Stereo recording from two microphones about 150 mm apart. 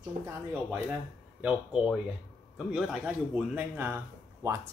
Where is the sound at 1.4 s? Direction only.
5° right (ahead or behind).